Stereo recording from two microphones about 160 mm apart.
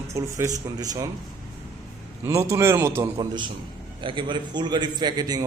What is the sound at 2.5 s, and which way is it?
Speech, 20° right (ahead or behind).